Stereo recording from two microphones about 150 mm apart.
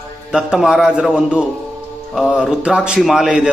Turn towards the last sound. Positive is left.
turn(degrees=-5)  # may be behind; listen again after turning